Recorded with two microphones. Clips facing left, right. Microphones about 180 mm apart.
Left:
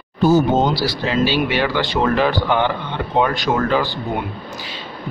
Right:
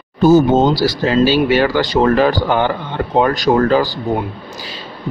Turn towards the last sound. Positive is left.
turn(degrees=-40)  # may be behind; listen again after turning